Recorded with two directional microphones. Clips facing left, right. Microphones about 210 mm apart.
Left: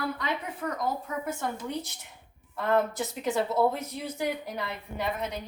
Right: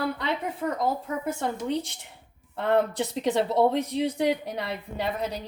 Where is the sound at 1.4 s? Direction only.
30° right (ahead or behind).